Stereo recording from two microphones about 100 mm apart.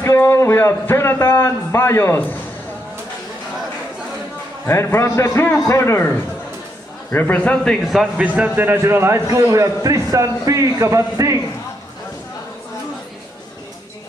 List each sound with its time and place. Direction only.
0.0 s speech: 30° left (ahead or behind)
4.6 s a man's voice: 25° left (ahead or behind)
7.8 s a man's voice: centre (ahead or behind)
8.4 s a man's voice: 20° right (ahead or behind)